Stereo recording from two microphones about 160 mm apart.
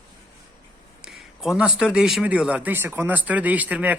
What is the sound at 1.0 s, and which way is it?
Speech, 5° right (ahead or behind).